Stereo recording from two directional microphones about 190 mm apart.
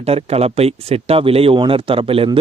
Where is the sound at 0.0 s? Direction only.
35° right (ahead or behind).